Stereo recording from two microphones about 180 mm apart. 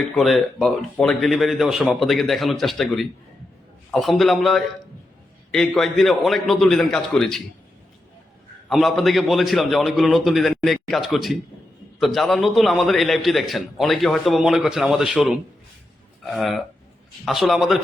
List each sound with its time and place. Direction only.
0.2 s a man's voice: centre (ahead or behind)
8.7 s a man's voice: centre (ahead or behind)